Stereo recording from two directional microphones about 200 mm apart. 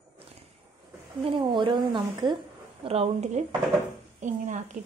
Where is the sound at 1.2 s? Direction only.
25° right (ahead or behind).